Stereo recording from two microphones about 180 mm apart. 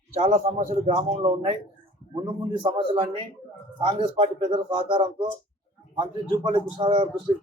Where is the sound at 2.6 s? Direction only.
30° right (ahead or behind).